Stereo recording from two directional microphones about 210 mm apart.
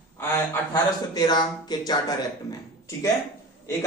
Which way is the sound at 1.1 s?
20° left (ahead or behind).